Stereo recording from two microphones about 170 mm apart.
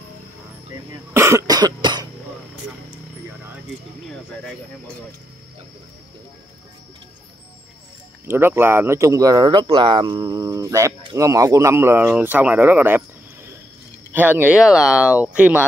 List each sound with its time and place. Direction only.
1.1 s cough: 15° right (ahead or behind)
8.3 s speech: 15° right (ahead or behind)
14.1 s speech: 10° right (ahead or behind)